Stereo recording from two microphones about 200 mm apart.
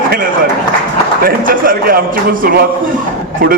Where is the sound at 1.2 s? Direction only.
45° right (ahead or behind).